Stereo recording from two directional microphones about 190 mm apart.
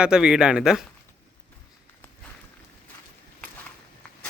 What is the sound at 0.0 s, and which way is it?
Speech, 5° right (ahead or behind).